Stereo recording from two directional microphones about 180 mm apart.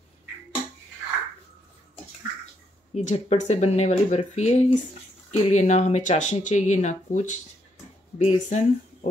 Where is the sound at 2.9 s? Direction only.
35° left (ahead or behind).